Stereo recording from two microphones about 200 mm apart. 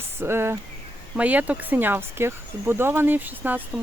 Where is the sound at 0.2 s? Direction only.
10° right (ahead or behind).